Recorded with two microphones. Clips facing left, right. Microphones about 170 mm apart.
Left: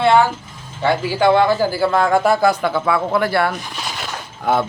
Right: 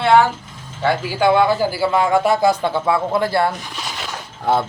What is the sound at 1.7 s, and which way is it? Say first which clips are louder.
Speech: left 1 dB; 10° right (ahead or behind).